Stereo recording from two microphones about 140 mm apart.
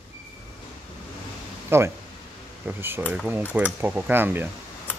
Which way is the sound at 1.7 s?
20° right (ahead or behind).